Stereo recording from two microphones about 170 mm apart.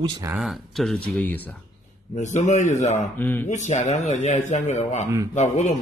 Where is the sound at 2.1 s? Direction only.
45° left (ahead or behind).